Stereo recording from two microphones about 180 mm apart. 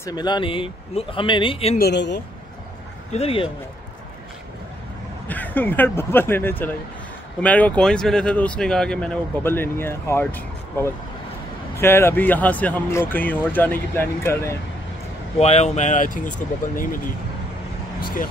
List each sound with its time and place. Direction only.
0.0 s speech: 25° left (ahead or behind)
1.8 s speech: 70° left (ahead or behind)
3.1 s speech: 35° left (ahead or behind)
5.3 s speech: 10° left (ahead or behind)
15.3 s speech: 35° left (ahead or behind)